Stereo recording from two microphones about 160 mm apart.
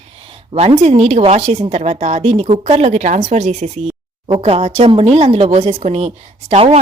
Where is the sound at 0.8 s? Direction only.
45° right (ahead or behind).